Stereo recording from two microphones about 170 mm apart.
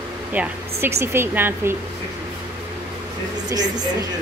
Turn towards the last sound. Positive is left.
turn(degrees=-25)  # may be behind; listen again after turning